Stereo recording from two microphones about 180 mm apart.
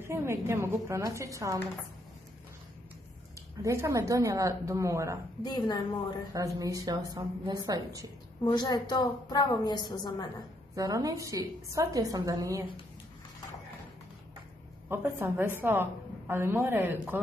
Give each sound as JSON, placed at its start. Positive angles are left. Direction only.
{"t": 0.0, "sound": "a woman's voice", "side_deg": -15}
{"t": 3.6, "sound": "a woman's voice", "side_deg": -15}
{"t": 5.4, "sound": "a woman's voice", "side_deg": 20}
{"t": 6.3, "sound": "a woman's voice", "side_deg": -20}
{"t": 8.5, "sound": "a woman's voice", "side_deg": 20}
{"t": 10.7, "sound": "a woman's voice", "side_deg": -20}
{"t": 14.9, "sound": "a woman's voice", "side_deg": -10}